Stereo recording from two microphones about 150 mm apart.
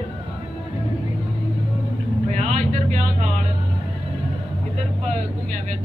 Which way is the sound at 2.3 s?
50° right (ahead or behind).